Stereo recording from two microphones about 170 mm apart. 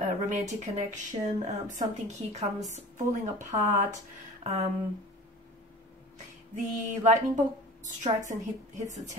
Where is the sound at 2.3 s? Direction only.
40° right (ahead or behind).